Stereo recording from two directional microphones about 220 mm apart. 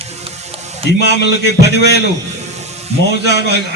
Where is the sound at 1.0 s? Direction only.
50° left (ahead or behind).